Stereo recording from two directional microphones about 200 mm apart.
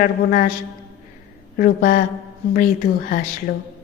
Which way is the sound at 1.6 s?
45° left (ahead or behind).